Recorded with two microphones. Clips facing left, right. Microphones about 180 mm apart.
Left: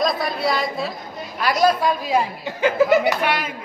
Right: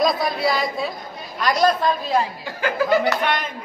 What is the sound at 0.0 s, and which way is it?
A man's voice, centre (ahead or behind).